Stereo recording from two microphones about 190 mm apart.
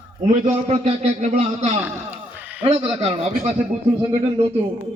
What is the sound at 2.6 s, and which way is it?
A man's voice, 35° right (ahead or behind).